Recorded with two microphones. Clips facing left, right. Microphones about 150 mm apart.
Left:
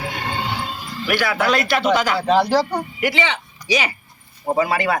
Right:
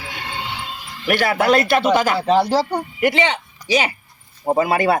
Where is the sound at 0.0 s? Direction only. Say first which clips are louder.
Left 4 dB; 45° left (ahead or behind).